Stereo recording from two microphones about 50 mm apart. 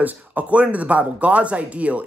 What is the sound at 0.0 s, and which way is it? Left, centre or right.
Speech, right.